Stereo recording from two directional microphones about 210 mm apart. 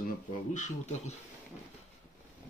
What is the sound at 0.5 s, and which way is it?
Speech, 35° left (ahead or behind).